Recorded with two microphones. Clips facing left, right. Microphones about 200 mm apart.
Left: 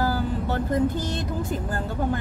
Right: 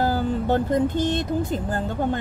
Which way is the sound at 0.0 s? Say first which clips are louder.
Right 3 dB; 20° right (ahead or behind).